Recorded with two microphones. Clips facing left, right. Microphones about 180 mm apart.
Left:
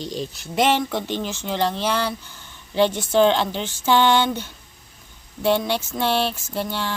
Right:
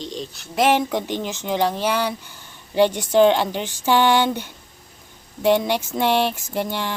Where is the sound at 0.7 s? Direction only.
15° right (ahead or behind).